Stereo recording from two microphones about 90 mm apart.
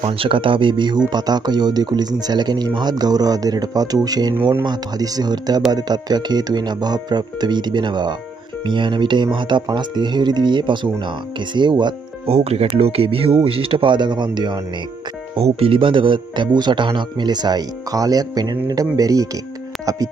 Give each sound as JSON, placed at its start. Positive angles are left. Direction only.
{"t": 0.0, "sound": "speech", "side_deg": -80}
{"t": 15.3, "sound": "speech", "side_deg": -85}